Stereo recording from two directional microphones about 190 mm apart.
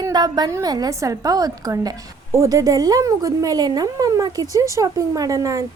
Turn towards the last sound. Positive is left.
turn(degrees=-20)  # may be behind; listen again after turning